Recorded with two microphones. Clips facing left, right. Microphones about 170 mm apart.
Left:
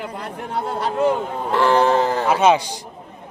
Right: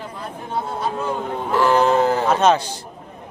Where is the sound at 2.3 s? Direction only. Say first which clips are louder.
Left 1 dB; 10° left (ahead or behind).